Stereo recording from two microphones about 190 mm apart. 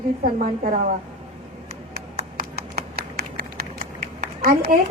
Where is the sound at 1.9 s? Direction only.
50° right (ahead or behind).